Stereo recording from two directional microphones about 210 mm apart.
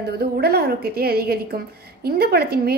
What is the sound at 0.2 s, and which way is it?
A woman's voice, 50° right (ahead or behind).